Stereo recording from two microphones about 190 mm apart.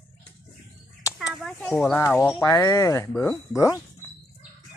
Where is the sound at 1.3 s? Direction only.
Centre (ahead or behind).